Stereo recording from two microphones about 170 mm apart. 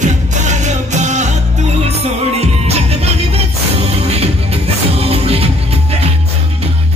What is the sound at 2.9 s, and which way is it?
Music, 40° right (ahead or behind).